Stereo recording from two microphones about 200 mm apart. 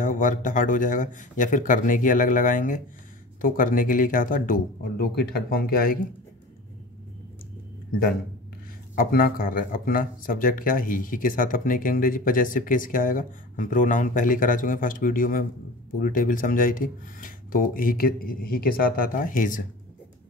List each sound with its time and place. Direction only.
0.0 s speech: 40° left (ahead or behind)
8.9 s speech: 45° left (ahead or behind)